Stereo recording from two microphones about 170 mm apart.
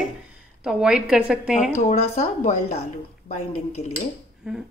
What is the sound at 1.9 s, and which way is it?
Speech, 45° left (ahead or behind).